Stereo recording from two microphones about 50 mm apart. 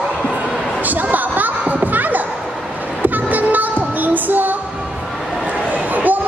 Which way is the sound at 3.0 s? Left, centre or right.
Right.